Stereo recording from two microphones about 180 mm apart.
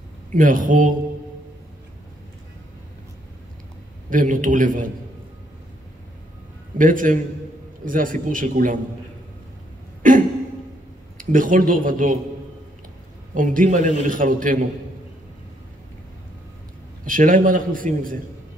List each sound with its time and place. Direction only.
0.3 s a man's voice: 50° right (ahead or behind)
4.1 s a man's voice: 50° right (ahead or behind)
6.8 s a man's voice: 50° right (ahead or behind)
10.0 s a man's voice: 50° right (ahead or behind)
13.3 s a man's voice: 50° right (ahead or behind)
17.0 s a man's voice: 50° right (ahead or behind)